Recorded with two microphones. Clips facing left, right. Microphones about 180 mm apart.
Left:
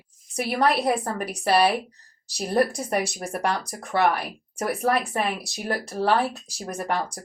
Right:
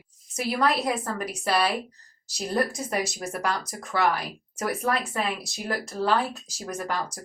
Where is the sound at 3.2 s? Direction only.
30° left (ahead or behind).